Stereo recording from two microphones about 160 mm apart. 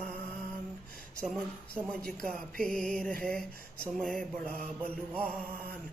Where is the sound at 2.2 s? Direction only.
5° left (ahead or behind).